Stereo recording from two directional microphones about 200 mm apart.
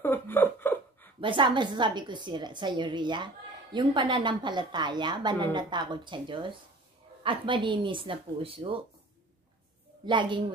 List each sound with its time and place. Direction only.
0.0 s chuckle: 10° left (ahead or behind)
1.2 s a woman's voice: 25° right (ahead or behind)
10.0 s a woman's voice: 25° right (ahead or behind)